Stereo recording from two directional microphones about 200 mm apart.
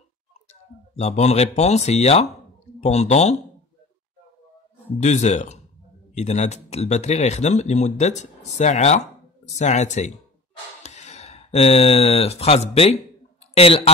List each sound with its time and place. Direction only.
0.5 s speech: 35° left (ahead or behind)
5.0 s speech: 35° left (ahead or behind)